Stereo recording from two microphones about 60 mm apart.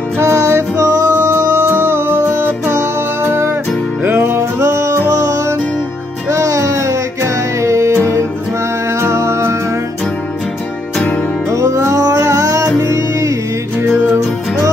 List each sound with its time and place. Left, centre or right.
0.2 s music: right
1.5 s music: right
2.7 s music: right
4.4 s music: right
7.6 s music: right
9.0 s music: right
11.5 s music: right